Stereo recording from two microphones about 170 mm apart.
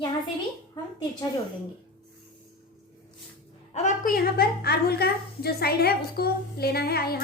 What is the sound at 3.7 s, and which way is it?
Speech, 45° left (ahead or behind).